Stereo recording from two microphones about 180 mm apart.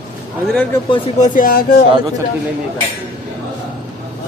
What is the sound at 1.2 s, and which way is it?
Speech, 50° left (ahead or behind).